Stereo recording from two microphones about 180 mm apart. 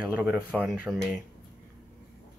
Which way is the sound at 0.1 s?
5° right (ahead or behind).